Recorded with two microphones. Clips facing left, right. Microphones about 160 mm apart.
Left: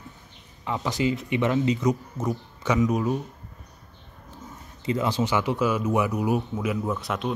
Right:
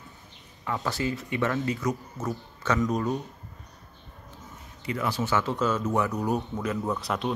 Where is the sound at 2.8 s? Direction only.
Centre (ahead or behind).